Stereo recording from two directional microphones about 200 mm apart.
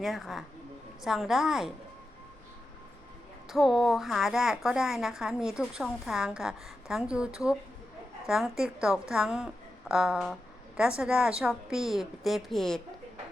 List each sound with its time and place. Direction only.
0.0 s a woman's voice: centre (ahead or behind)
3.5 s a woman's voice: centre (ahead or behind)